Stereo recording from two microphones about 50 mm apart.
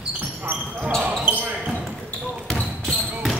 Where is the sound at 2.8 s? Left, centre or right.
Centre.